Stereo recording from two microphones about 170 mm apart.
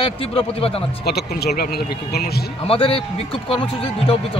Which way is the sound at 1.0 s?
70° left (ahead or behind).